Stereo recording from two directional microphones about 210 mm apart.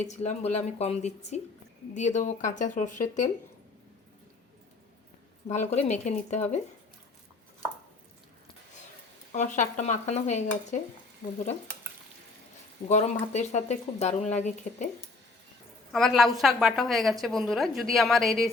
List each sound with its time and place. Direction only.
0.0 s speech: 35° left (ahead or behind)
5.5 s speech: 35° left (ahead or behind)
9.3 s speech: 35° left (ahead or behind)
12.9 s speech: 35° left (ahead or behind)
15.9 s a woman's voice: centre (ahead or behind)